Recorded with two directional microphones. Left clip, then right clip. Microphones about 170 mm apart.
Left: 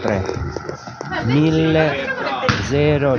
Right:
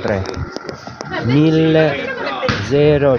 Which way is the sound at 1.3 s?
35° right (ahead or behind).